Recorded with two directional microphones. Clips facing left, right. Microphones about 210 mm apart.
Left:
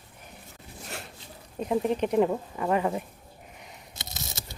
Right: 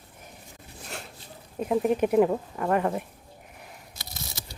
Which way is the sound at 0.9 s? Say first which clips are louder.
Even; centre (ahead or behind).